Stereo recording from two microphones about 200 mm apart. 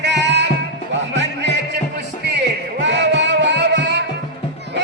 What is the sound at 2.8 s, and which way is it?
Music, 60° right (ahead or behind).